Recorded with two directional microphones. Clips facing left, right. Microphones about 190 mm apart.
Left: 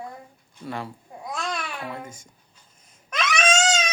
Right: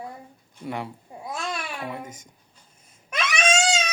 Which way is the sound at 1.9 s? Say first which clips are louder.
Even; 20° right (ahead or behind).